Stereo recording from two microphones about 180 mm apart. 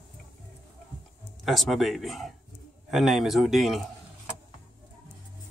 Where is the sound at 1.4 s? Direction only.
Centre (ahead or behind).